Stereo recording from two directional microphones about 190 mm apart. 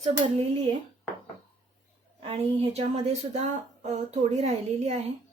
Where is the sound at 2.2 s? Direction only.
30° right (ahead or behind).